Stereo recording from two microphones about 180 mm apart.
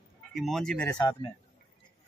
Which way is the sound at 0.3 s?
Centre (ahead or behind).